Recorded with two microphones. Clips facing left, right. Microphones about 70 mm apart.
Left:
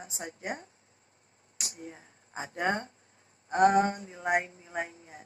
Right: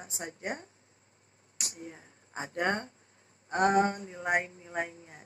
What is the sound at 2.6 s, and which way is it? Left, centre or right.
Speech, right.